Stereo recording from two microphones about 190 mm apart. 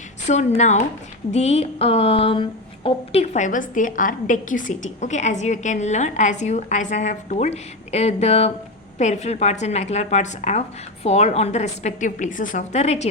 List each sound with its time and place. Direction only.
0.3 s speech: 35° left (ahead or behind)